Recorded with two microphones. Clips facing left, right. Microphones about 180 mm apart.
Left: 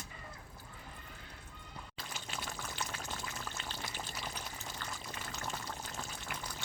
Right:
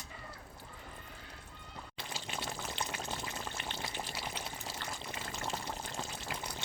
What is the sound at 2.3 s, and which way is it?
Pour, 20° right (ahead or behind).